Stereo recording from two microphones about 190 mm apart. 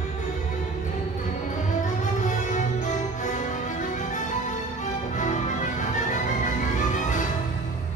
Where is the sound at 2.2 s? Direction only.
40° left (ahead or behind).